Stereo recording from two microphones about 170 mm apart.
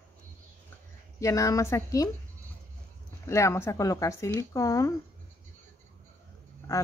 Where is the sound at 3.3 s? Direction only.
15° left (ahead or behind).